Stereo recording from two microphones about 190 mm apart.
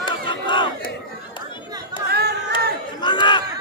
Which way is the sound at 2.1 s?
55° right (ahead or behind).